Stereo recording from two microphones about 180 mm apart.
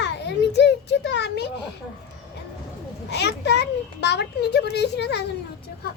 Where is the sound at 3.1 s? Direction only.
70° left (ahead or behind).